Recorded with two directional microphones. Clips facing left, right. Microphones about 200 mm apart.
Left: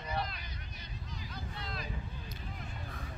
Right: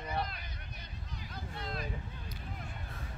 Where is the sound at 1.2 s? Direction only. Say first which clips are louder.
Right 2 dB; 50° right (ahead or behind).